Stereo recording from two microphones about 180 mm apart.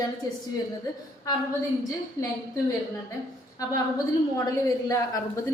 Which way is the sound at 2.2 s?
20° left (ahead or behind).